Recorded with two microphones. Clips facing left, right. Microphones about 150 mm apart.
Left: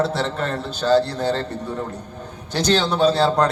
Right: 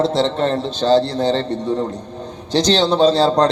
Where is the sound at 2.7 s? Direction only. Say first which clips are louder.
Right 3 dB; 30° right (ahead or behind).